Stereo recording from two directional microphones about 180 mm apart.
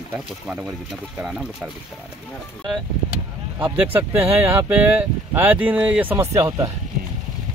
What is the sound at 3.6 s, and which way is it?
Speech, 10° right (ahead or behind).